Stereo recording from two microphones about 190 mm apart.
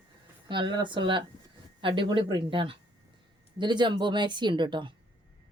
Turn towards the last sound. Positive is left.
turn(degrees=-25)  # may be behind; listen again after turning